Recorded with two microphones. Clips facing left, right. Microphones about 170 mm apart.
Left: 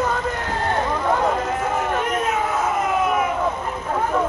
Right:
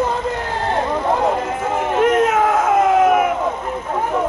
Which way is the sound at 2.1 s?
85° right.